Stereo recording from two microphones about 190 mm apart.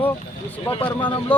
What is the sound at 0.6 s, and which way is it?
Speech, 25° left (ahead or behind).